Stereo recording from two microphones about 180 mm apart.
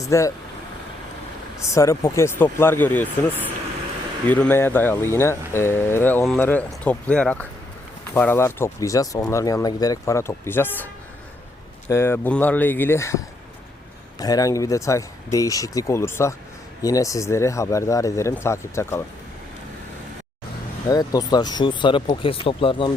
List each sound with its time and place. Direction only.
0.0 s speech: 20° left (ahead or behind)
1.7 s speech: 15° left (ahead or behind)
4.3 s speech: 10° left (ahead or behind)
11.9 s speech: 15° left (ahead or behind)
20.9 s speech: 20° left (ahead or behind)